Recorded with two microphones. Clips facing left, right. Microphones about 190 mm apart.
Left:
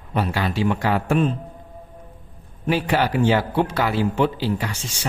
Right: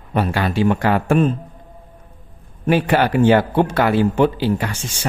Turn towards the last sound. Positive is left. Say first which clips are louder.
# right 4 dB
turn(degrees=-55)  # may be behind; listen again after turning